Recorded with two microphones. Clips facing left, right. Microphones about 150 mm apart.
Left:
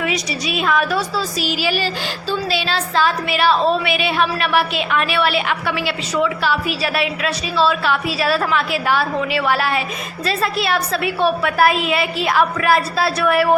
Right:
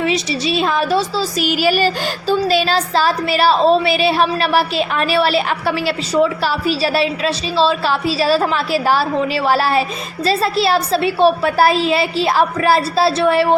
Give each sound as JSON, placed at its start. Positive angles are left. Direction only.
{"t": 0.0, "sound": "a woman's voice", "side_deg": -30}
{"t": 1.4, "sound": "a sound", "side_deg": -50}
{"t": 2.3, "sound": "a woman's voice", "side_deg": -45}